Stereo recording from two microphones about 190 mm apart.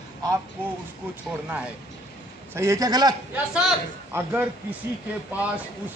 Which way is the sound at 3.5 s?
5° right (ahead or behind).